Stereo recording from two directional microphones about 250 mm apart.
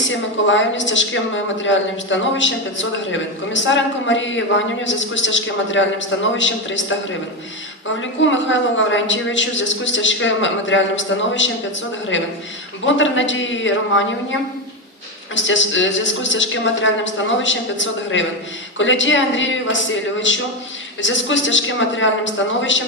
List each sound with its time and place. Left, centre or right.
0.1 s a man's voice: left
8.2 s a man's voice: left
15.4 s a man's voice: left